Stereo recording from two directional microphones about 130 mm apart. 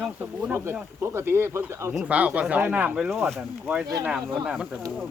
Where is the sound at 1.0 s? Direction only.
20° right (ahead or behind).